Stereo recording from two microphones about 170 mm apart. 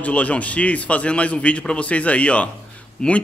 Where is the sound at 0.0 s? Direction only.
10° left (ahead or behind).